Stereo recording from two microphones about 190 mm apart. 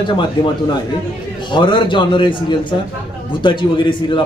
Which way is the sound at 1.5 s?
25° left (ahead or behind).